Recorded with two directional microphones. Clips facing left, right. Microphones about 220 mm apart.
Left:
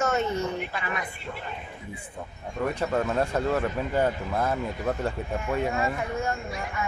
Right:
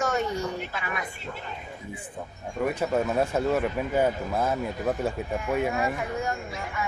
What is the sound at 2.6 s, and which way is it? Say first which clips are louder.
Speech: right 1 dB; 5° right (ahead or behind).